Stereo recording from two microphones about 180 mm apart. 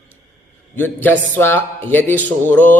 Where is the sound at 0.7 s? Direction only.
10° left (ahead or behind).